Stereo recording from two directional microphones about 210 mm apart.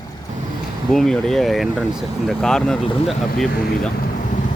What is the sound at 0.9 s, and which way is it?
Speech, centre (ahead or behind).